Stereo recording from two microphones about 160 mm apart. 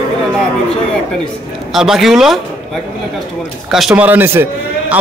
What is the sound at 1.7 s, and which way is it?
Speech, centre (ahead or behind).